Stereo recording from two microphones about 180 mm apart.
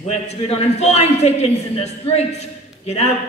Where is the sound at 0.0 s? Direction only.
35° left (ahead or behind).